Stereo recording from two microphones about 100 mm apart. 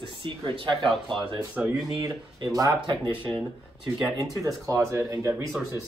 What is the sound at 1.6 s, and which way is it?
Speech, 10° right (ahead or behind).